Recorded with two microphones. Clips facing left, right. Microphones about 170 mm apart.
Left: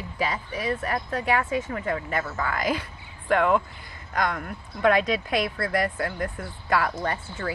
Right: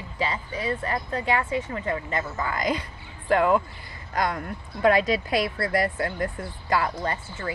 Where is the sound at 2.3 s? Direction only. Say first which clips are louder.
Right 1 dB; 5° left (ahead or behind).